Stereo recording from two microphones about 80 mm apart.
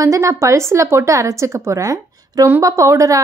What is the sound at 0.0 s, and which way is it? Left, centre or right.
A woman's voice, right.